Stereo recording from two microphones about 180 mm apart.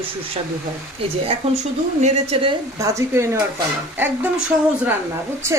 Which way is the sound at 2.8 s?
15° right (ahead or behind).